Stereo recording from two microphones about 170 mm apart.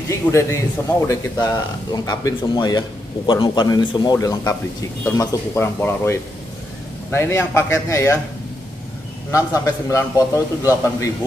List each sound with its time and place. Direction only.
0.1 s a man's voice: 15° left (ahead or behind)
9.3 s a man's voice: 15° left (ahead or behind)